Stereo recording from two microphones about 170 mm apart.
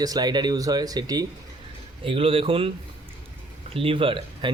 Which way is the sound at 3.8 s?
30° right (ahead or behind).